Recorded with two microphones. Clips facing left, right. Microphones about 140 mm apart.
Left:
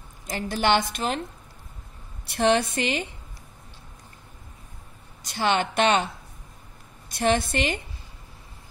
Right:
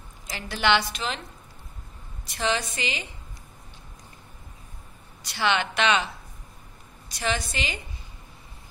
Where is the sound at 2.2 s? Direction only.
55° left (ahead or behind).